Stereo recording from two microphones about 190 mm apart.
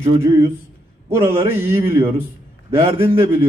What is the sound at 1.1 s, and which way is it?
A man's voice, 15° right (ahead or behind).